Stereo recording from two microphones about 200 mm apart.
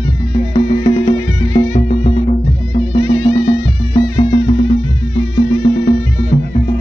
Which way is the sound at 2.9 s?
20° left (ahead or behind).